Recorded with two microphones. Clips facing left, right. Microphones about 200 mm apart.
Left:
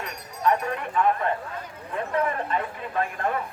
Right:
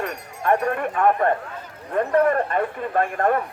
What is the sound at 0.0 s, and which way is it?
Speech, 55° right (ahead or behind).